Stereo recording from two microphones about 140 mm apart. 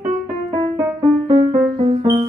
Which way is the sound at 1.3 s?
45° right (ahead or behind).